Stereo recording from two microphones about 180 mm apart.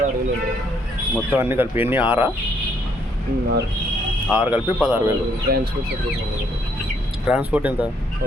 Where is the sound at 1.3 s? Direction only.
10° right (ahead or behind).